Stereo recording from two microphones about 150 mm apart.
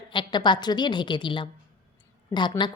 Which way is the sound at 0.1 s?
30° left (ahead or behind).